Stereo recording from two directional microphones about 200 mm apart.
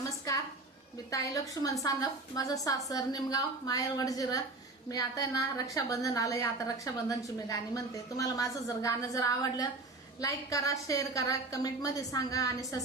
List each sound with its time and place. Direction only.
1.1 s a woman's voice: 15° left (ahead or behind)